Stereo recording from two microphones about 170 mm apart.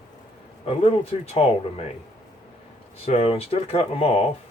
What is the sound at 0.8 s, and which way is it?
Speech, 35° left (ahead or behind).